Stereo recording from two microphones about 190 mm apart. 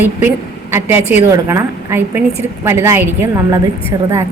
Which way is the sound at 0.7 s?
10° right (ahead or behind).